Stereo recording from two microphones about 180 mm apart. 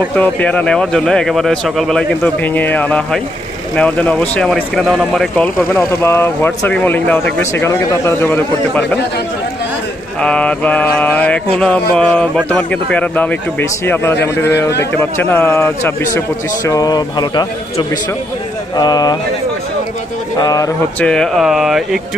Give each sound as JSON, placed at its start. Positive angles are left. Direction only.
{"t": 0.1, "sound": "speech", "side_deg": 10}
{"t": 10.2, "sound": "speech", "side_deg": 5}
{"t": 15.1, "sound": "speech", "side_deg": 10}
{"t": 18.8, "sound": "speech", "side_deg": 20}
{"t": 20.3, "sound": "speech", "side_deg": 20}
{"t": 21.0, "sound": "speech", "side_deg": 5}